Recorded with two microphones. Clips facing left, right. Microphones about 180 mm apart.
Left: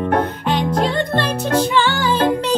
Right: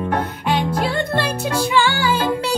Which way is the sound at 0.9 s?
10° right (ahead or behind).